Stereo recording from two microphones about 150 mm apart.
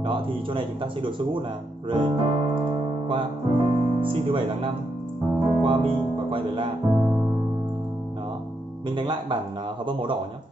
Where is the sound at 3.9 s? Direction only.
35° right (ahead or behind).